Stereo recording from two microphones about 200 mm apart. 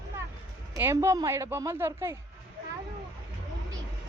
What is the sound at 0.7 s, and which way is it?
Speech, 15° right (ahead or behind).